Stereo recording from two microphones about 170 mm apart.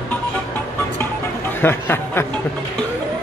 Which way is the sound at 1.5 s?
15° left (ahead or behind).